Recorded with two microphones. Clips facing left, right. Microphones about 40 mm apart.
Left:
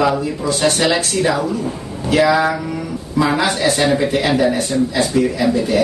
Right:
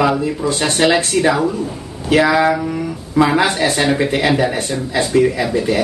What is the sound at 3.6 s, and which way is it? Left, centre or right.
Speech, centre.